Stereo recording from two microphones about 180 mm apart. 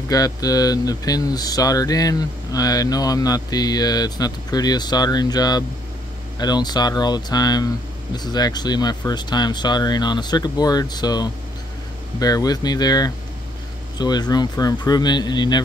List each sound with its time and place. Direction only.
0.1 s speech: 20° left (ahead or behind)